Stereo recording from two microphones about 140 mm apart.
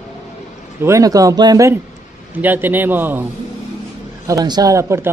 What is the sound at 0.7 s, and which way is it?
Speech, 20° right (ahead or behind).